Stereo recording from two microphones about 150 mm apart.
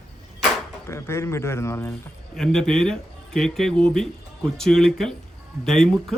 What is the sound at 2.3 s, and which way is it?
Speech, 5° left (ahead or behind).